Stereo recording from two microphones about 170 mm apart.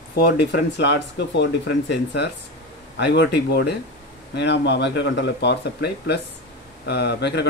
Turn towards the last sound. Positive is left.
turn(degrees=75)  # may be behind; listen again after turning